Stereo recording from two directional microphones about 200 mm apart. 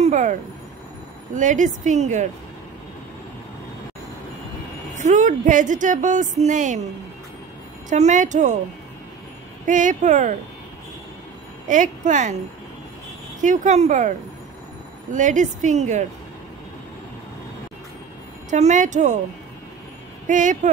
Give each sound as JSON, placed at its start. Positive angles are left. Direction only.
{"t": 0.0, "sound": "a woman's voice", "side_deg": -35}
{"t": 4.9, "sound": "a woman's voice", "side_deg": -40}
{"t": 7.9, "sound": "a woman's voice", "side_deg": -35}
{"t": 9.7, "sound": "a woman's voice", "side_deg": -40}
{"t": 11.6, "sound": "speech", "side_deg": -40}
{"t": 13.4, "sound": "a woman's voice", "side_deg": -40}
{"t": 15.1, "sound": "a woman's voice", "side_deg": -40}
{"t": 18.5, "sound": "a woman's voice", "side_deg": -40}
{"t": 20.2, "sound": "a woman's voice", "side_deg": -40}